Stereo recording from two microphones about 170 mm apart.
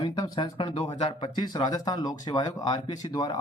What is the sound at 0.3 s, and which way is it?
Speech, 30° left (ahead or behind).